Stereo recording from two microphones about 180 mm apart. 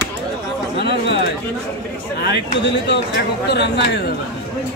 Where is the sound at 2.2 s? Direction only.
70° left (ahead or behind).